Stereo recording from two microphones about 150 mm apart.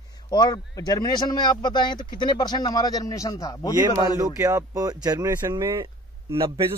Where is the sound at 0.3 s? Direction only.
30° left (ahead or behind).